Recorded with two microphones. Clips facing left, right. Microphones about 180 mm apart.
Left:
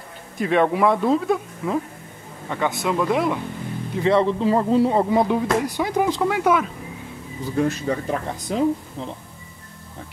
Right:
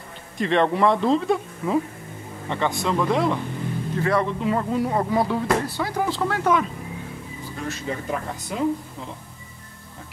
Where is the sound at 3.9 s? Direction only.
25° left (ahead or behind).